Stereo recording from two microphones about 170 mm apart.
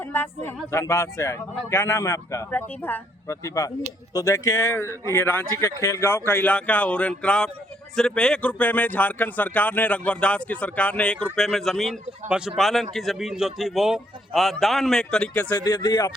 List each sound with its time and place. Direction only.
0.0 s a man's voice: 10° left (ahead or behind)
15.5 s speech: 25° left (ahead or behind)